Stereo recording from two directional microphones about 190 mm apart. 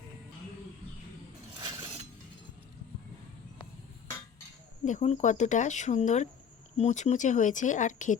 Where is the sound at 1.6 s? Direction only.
20° right (ahead or behind).